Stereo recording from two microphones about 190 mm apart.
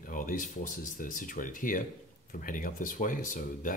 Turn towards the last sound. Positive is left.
turn(degrees=45)  # may be behind; listen again after turning